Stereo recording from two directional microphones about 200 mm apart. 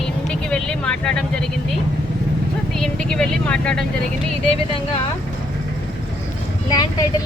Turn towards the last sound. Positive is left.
turn(degrees=20)  # may be behind; listen again after turning